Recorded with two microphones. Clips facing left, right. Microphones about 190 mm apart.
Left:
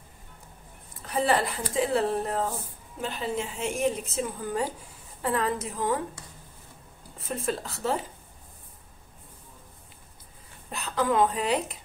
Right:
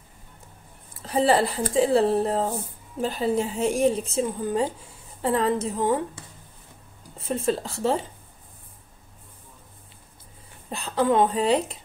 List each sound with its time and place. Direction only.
0.9 s a woman's voice: 30° right (ahead or behind)
10.7 s a woman's voice: 30° right (ahead or behind)